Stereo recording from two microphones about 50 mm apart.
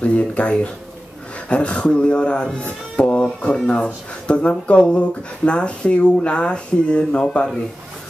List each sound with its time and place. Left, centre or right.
0.0 s speech: left